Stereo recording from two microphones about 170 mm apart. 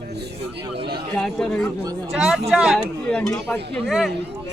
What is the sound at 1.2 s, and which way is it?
Speech, 5° left (ahead or behind).